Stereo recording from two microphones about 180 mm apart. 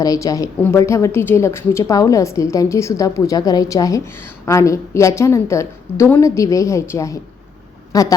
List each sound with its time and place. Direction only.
0.0 s a woman's voice: 20° left (ahead or behind)